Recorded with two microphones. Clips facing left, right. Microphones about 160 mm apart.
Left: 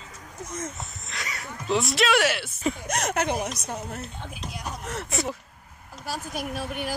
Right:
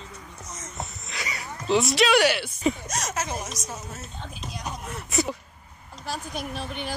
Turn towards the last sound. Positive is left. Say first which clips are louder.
# left 2 dB
turn(degrees=5)  # may be behind; listen again after turning